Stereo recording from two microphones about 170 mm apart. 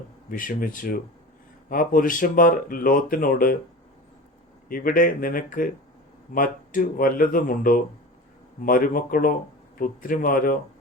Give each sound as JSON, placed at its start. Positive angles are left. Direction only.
{"t": 0.3, "sound": "speech", "side_deg": 55}
{"t": 4.7, "sound": "speech", "side_deg": 55}